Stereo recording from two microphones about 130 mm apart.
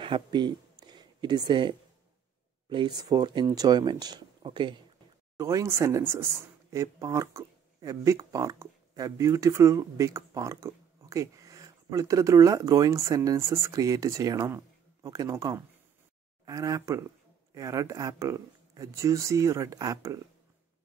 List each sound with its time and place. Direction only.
0.0 s speech: 35° right (ahead or behind)
3.0 s speech: 30° right (ahead or behind)
5.4 s speech: 25° right (ahead or behind)